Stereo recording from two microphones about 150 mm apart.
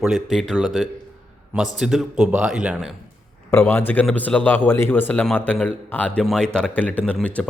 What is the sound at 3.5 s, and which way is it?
A man's voice, 15° left (ahead or behind).